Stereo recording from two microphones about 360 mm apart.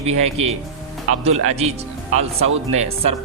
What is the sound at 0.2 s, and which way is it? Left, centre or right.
Speech, centre.